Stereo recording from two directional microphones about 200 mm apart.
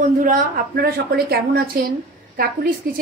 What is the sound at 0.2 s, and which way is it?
A woman's voice, 45° right (ahead or behind).